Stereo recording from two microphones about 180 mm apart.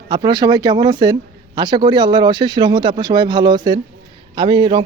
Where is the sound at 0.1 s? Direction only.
25° right (ahead or behind).